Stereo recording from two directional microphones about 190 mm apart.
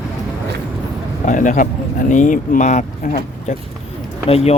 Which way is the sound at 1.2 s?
40° left (ahead or behind).